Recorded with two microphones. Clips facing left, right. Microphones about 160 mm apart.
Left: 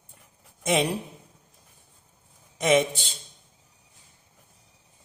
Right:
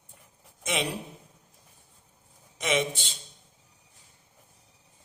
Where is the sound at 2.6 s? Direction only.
40° left (ahead or behind).